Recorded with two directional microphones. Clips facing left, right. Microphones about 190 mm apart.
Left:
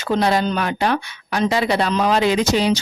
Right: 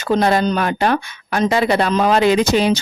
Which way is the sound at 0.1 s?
50° right (ahead or behind).